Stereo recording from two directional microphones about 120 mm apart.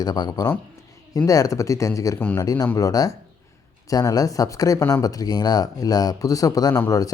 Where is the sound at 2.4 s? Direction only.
30° left (ahead or behind).